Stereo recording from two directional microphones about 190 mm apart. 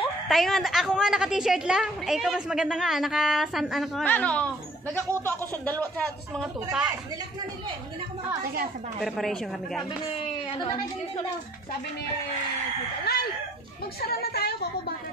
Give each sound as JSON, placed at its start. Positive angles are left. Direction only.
{"t": 0.3, "sound": "a woman's voice", "side_deg": 0}
{"t": 6.4, "sound": "a woman's voice", "side_deg": -5}
{"t": 9.0, "sound": "a woman's voice", "side_deg": 0}
{"t": 13.0, "sound": "a woman's voice", "side_deg": 55}